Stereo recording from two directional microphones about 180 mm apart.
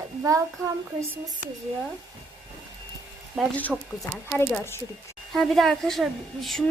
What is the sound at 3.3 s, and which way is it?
A woman's voice, centre (ahead or behind).